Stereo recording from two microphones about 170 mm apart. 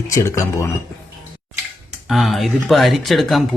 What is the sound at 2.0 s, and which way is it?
Speech, centre (ahead or behind).